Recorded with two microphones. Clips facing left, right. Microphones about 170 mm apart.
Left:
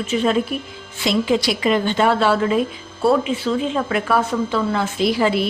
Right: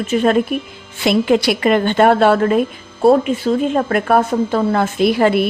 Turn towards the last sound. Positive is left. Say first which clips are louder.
# right 4 dB
turn(degrees=-55)  # may be behind; listen again after turning